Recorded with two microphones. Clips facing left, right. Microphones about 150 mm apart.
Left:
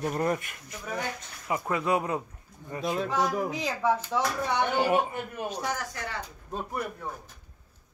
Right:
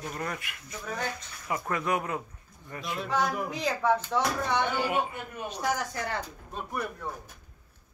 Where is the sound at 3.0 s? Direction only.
Centre (ahead or behind).